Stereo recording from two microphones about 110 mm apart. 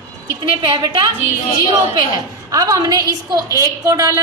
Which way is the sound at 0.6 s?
40° right (ahead or behind).